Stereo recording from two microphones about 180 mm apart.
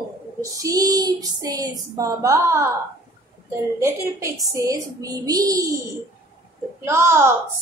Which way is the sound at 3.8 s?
15° right (ahead or behind).